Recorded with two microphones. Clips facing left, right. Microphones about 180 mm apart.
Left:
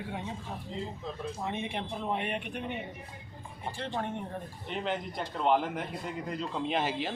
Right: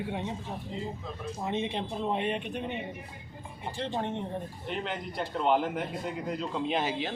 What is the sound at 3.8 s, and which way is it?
Speech, 25° right (ahead or behind).